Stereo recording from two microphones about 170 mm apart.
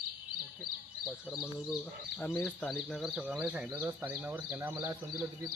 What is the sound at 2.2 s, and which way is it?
Speech, 5° left (ahead or behind).